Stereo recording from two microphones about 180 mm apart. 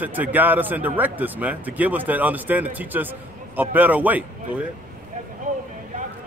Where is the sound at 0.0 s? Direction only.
10° right (ahead or behind).